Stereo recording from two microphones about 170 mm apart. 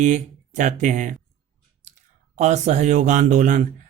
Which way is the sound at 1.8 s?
45° right (ahead or behind).